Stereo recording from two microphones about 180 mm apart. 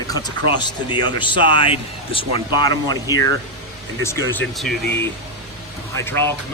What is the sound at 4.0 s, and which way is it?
Speech, 15° left (ahead or behind).